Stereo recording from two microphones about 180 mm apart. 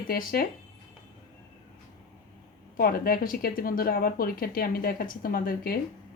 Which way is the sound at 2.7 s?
55° left (ahead or behind).